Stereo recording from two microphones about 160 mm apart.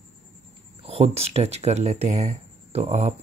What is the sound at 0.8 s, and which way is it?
Speech, 40° right (ahead or behind).